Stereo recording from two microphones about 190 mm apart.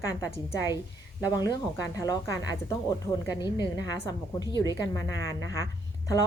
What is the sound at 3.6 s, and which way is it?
A woman's voice, 20° left (ahead or behind).